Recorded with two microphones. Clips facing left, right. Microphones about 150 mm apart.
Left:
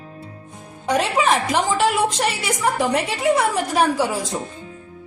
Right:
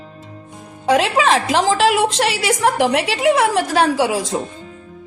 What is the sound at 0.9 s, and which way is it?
A woman's voice, 90° right.